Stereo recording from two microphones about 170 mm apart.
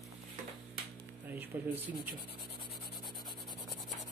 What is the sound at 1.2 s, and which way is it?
Speech, 10° right (ahead or behind).